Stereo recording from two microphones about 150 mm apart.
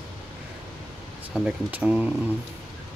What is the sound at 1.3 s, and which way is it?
Speech, 5° right (ahead or behind).